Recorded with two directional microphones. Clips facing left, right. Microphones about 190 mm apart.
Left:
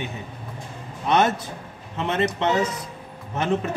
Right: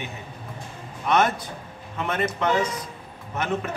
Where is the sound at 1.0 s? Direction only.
25° left (ahead or behind).